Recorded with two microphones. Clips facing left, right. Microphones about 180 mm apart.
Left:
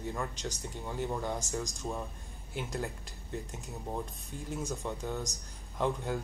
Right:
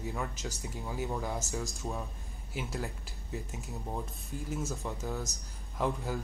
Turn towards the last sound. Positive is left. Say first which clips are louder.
# left 1 dB
turn(degrees=-5)  # may be behind; listen again after turning